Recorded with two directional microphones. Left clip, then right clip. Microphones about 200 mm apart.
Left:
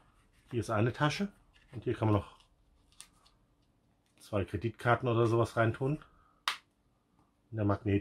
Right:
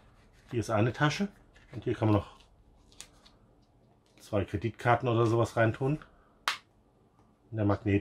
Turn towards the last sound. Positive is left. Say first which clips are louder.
# right 3 dB
turn(degrees=20)  # may be behind; listen again after turning